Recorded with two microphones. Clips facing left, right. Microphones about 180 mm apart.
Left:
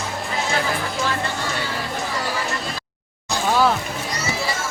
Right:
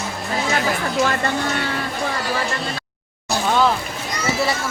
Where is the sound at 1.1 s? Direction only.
50° right (ahead or behind).